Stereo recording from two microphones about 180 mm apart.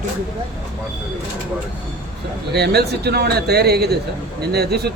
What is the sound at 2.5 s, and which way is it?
Speech, 65° right (ahead or behind).